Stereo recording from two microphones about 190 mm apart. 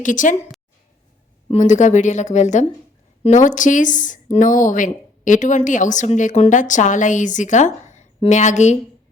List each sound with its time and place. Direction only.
0.0 s a woman's voice: 45° left (ahead or behind)